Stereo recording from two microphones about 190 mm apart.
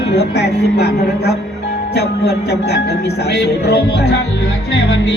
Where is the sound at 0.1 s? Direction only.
60° left (ahead or behind).